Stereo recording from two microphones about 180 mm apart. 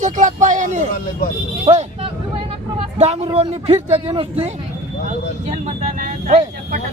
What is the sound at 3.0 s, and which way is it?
Speech, 35° right (ahead or behind).